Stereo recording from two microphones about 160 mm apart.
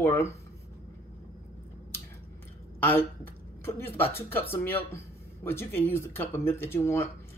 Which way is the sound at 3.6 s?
15° left (ahead or behind).